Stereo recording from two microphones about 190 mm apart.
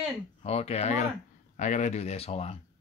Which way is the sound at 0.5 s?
35° left (ahead or behind).